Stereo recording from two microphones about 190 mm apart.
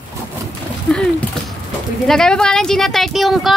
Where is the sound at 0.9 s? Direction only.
5° left (ahead or behind).